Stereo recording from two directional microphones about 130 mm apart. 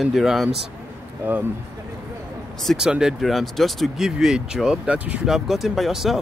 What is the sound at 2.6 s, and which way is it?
Speech, centre (ahead or behind).